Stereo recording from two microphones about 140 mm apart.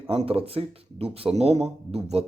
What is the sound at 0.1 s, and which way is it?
Speech, 45° right (ahead or behind).